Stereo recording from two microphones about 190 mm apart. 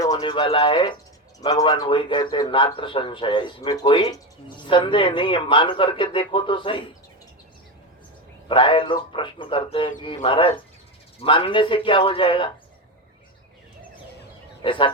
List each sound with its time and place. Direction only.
0.0 s speech: 20° left (ahead or behind)
8.4 s speech: 25° left (ahead or behind)
14.6 s speech: 25° left (ahead or behind)